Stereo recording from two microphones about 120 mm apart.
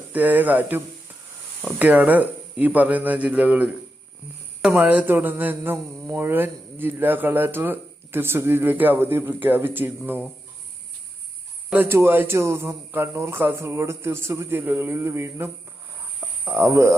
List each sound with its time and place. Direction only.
0.1 s speech: 15° right (ahead or behind)
11.7 s a man's voice: 20° right (ahead or behind)
16.5 s a man's voice: 20° right (ahead or behind)